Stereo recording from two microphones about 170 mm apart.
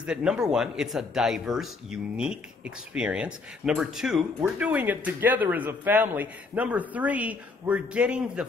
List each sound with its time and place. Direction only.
0.0 s speech: 5° right (ahead or behind)